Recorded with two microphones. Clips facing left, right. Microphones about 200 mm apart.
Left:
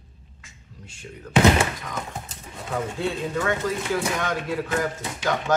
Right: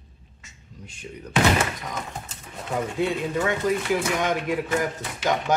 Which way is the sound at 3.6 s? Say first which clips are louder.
Right 4 dB; 20° right (ahead or behind).